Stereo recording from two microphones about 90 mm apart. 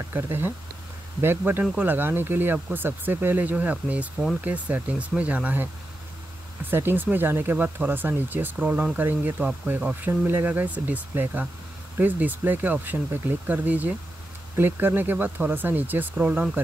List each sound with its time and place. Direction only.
0.1 s speech: 25° right (ahead or behind)
6.7 s speech: 25° right (ahead or behind)